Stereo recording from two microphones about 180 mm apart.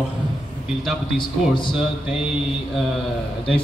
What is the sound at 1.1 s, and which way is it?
Speech, 25° left (ahead or behind).